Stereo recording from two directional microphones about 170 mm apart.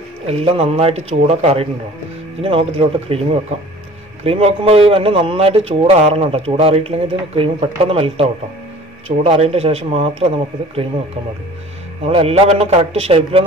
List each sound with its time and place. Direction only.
0.3 s speech: 35° right (ahead or behind)
12.1 s speech: 35° right (ahead or behind)